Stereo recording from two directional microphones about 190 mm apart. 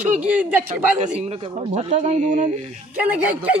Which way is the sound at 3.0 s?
5° right (ahead or behind).